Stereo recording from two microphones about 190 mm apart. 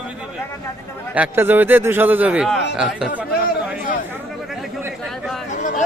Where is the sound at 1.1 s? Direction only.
10° right (ahead or behind).